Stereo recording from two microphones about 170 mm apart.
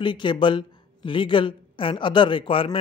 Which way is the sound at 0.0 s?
25° left (ahead or behind).